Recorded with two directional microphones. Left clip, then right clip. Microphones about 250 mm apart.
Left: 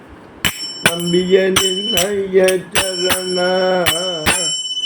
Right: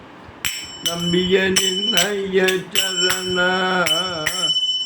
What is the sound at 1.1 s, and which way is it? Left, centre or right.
Music, centre.